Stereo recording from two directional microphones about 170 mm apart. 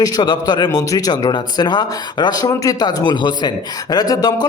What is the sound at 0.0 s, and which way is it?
A man's voice, 25° left (ahead or behind).